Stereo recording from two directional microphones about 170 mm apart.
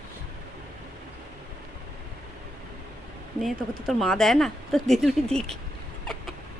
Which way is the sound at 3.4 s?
Centre (ahead or behind).